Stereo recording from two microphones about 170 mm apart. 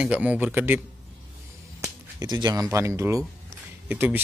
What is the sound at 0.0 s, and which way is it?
Speech, 10° right (ahead or behind).